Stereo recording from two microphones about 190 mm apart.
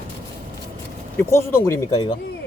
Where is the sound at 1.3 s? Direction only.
15° left (ahead or behind).